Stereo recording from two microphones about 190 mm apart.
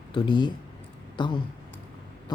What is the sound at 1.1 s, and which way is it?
Speech, 25° left (ahead or behind).